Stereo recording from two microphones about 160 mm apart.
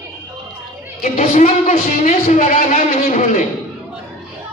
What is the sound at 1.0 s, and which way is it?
A man's voice, 50° left (ahead or behind).